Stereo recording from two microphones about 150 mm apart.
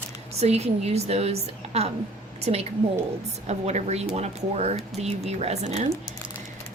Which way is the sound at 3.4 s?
50° right (ahead or behind).